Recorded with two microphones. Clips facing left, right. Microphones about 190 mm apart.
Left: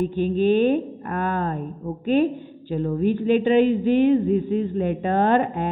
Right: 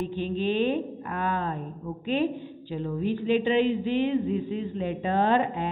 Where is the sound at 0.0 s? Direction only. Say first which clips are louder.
Left 7 dB; 50° left (ahead or behind).